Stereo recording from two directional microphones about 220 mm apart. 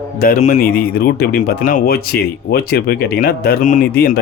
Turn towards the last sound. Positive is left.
turn(degrees=45)  # may be behind; listen again after turning